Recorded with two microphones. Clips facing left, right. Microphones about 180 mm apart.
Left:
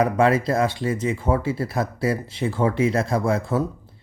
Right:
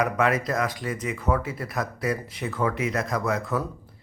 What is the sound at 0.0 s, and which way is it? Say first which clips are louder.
Speech: left 5 dB; 30° left (ahead or behind).